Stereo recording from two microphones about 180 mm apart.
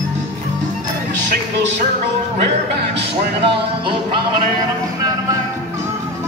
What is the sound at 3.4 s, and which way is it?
Music, 30° right (ahead or behind).